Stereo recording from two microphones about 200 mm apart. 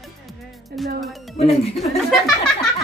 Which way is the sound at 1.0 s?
Centre (ahead or behind).